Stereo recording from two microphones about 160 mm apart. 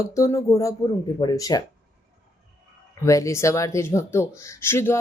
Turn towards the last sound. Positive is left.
turn(degrees=15)  # may be behind; listen again after turning